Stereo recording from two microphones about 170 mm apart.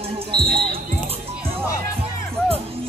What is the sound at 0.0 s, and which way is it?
Basketball bounce, 35° right (ahead or behind).